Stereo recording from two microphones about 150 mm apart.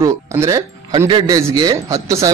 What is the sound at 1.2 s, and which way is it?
Speech, 25° right (ahead or behind).